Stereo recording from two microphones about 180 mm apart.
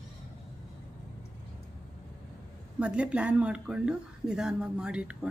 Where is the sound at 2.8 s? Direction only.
5° right (ahead or behind).